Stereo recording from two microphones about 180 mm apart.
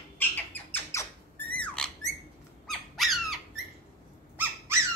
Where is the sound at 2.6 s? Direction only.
Centre (ahead or behind).